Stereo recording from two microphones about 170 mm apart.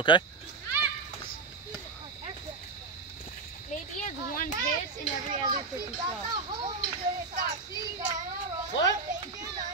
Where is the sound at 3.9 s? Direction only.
50° left (ahead or behind).